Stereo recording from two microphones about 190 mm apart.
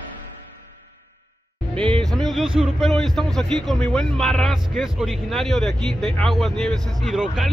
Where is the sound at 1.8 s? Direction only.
5° left (ahead or behind).